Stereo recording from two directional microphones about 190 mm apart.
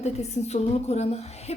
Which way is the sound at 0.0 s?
35° left (ahead or behind).